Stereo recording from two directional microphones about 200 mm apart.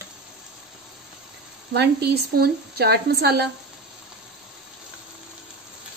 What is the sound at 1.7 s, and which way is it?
A woman's voice, 55° right (ahead or behind).